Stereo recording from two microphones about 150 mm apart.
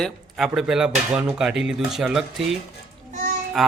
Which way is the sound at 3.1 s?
55° right (ahead or behind).